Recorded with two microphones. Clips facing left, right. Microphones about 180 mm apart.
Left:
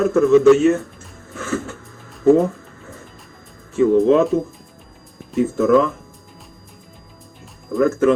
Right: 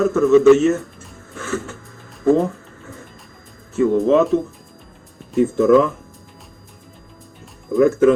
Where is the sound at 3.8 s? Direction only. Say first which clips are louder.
Left 1 dB; centre (ahead or behind).